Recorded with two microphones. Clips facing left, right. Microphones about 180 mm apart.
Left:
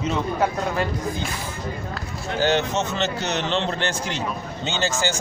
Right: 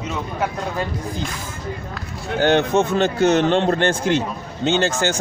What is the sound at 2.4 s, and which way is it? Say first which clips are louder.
A man's voice: right 5 dB; 55° right (ahead or behind).